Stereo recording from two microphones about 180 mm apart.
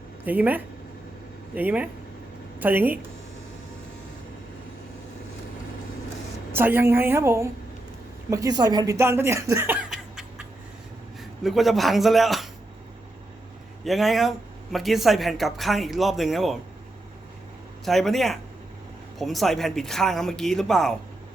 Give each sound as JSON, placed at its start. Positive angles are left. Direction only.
{"t": 0.3, "sound": "speech", "side_deg": -10}
{"t": 6.5, "sound": "speech", "side_deg": -10}
{"t": 9.9, "sound": "a sound", "side_deg": -5}
{"t": 11.2, "sound": "speech", "side_deg": 0}
{"t": 13.8, "sound": "speech", "side_deg": 0}
{"t": 17.8, "sound": "speech", "side_deg": 0}